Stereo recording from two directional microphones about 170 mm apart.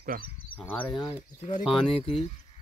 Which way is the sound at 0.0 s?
55° right (ahead or behind).